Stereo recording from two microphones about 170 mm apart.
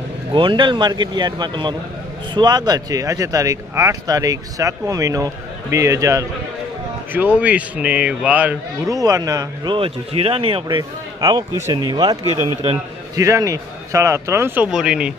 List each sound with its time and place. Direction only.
0.3 s a man's voice: 30° right (ahead or behind); by 8.9 s 10° right (ahead or behind)
8.9 s a man's voice: 20° right (ahead or behind); by 15.1 s 5° right (ahead or behind)